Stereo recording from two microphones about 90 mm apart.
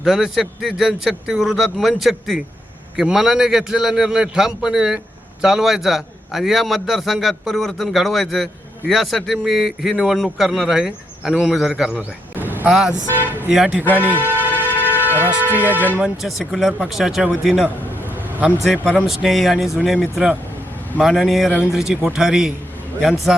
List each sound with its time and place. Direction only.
0.0 s a man's voice: 5° right (ahead or behind)
12.4 s a sound: 20° right (ahead or behind)
12.6 s speech: 5° right (ahead or behind)
14.0 s speech: 20° left (ahead or behind)
14.3 s music: 20° right (ahead or behind)
14.5 s music: 20° left (ahead or behind)
15.1 s a man's voice: 20° right (ahead or behind); by 17.7 s centre (ahead or behind)
19.0 s a man's voice: centre (ahead or behind)